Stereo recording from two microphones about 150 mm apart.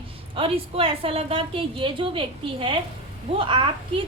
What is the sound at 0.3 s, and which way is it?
A woman's voice, 40° right (ahead or behind).